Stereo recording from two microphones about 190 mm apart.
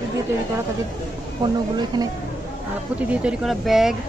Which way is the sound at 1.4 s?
20° right (ahead or behind).